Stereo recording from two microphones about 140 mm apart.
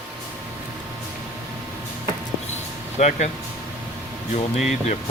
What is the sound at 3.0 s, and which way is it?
Speech, 55° left (ahead or behind).